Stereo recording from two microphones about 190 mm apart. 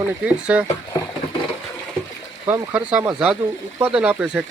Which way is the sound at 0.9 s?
20° left (ahead or behind).